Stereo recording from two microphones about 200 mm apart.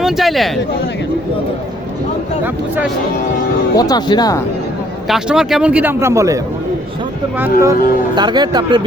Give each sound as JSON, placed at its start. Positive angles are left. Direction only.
{"t": 0.0, "sound": "speech", "side_deg": 0}
{"t": 3.8, "sound": "speech", "side_deg": 20}
{"t": 5.0, "sound": "a man's voice", "side_deg": 0}
{"t": 7.6, "sound": "speech", "side_deg": -20}